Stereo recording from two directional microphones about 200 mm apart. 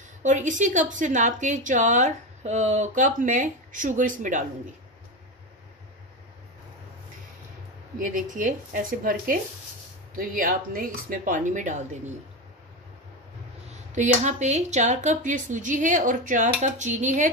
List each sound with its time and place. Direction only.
0.2 s a woman's voice: 40° right (ahead or behind)
8.0 s a woman's voice: 40° right (ahead or behind)
13.9 s a woman's voice: 35° right (ahead or behind)